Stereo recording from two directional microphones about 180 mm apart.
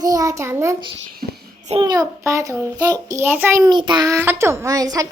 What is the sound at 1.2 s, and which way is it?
Child singing, 55° right (ahead or behind).